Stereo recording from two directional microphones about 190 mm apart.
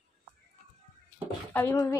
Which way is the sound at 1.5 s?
15° left (ahead or behind).